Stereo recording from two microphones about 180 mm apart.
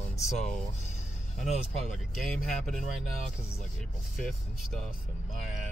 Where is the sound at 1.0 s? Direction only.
40° left (ahead or behind).